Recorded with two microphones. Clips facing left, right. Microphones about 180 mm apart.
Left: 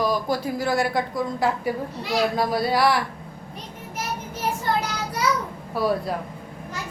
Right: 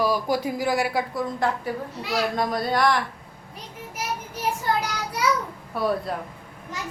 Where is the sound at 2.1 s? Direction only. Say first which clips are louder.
Left 2 dB; 5° left (ahead or behind).